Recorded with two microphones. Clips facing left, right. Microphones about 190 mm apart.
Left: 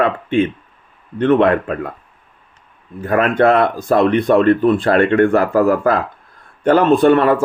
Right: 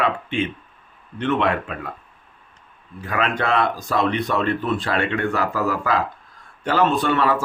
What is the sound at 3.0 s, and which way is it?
Speech, 50° left (ahead or behind).